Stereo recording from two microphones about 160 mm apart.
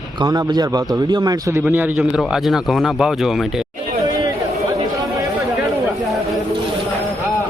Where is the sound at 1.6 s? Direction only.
10° right (ahead or behind).